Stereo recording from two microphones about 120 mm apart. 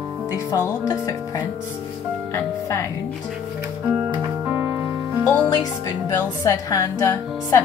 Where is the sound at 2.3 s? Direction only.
25° left (ahead or behind).